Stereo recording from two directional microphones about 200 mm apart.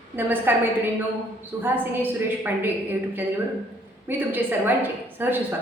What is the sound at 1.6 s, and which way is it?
A woman's voice, 10° right (ahead or behind).